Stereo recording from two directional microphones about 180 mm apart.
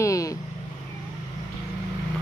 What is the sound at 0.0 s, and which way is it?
Vehicle, 20° left (ahead or behind).